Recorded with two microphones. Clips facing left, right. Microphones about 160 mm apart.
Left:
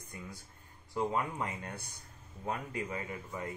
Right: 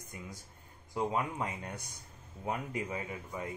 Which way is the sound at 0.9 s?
15° right (ahead or behind).